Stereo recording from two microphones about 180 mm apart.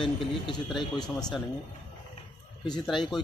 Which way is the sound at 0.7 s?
25° left (ahead or behind).